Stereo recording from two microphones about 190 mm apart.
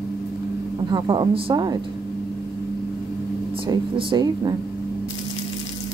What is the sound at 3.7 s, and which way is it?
Speech, 20° right (ahead or behind).